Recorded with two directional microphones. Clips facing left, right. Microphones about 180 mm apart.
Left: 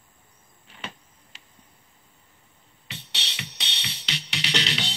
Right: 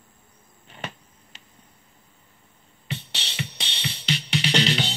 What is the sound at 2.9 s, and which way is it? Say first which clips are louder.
Music: right 6 dB; 50° right (ahead or behind).